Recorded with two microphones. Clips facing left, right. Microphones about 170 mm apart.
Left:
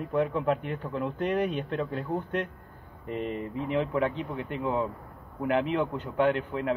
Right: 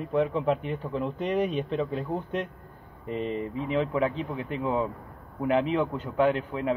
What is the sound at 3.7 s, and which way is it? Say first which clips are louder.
Speech: right 1 dB; centre (ahead or behind).